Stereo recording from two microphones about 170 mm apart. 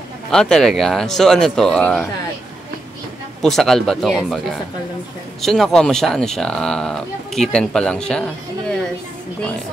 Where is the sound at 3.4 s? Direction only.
Centre (ahead or behind).